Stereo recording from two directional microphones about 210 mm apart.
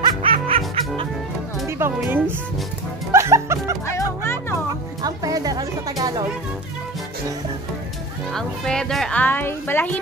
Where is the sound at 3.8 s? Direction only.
10° left (ahead or behind).